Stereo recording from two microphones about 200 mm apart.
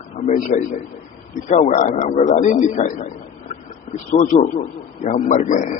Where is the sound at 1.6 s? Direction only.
40° left (ahead or behind).